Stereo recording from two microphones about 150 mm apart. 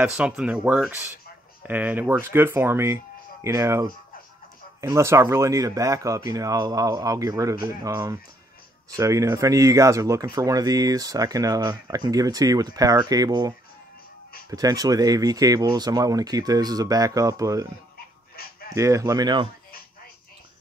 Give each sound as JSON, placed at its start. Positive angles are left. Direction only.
{"t": 0.0, "sound": "speech", "side_deg": -10}
{"t": 18.8, "sound": "speech", "side_deg": -20}